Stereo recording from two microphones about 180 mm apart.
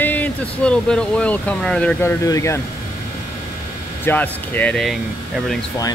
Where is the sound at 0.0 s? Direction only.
10° left (ahead or behind).